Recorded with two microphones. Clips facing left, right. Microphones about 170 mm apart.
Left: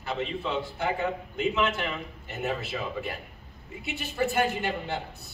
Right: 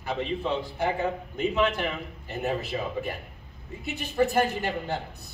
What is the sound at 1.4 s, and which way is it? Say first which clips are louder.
Speech: right 2 dB; 35° right (ahead or behind).